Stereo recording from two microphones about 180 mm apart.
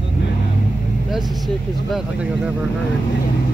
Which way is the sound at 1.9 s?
5° right (ahead or behind).